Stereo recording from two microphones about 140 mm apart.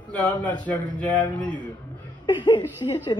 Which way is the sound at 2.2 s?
30° left (ahead or behind).